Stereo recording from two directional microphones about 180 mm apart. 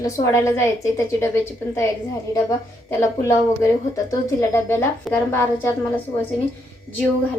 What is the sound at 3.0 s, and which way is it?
A woman's voice, 15° left (ahead or behind).